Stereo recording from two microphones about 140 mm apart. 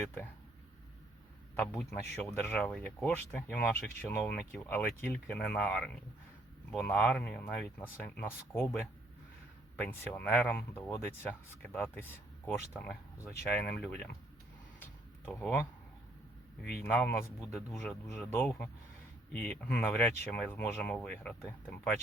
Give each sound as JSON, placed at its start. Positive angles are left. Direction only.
{"t": 1.5, "sound": "speech", "side_deg": 15}
{"t": 10.2, "sound": "speech", "side_deg": 15}
{"t": 14.8, "sound": "a sound", "side_deg": 10}
{"t": 16.6, "sound": "speech", "side_deg": 10}